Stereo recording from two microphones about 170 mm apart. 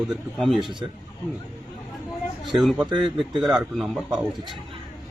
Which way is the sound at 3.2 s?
25° right (ahead or behind).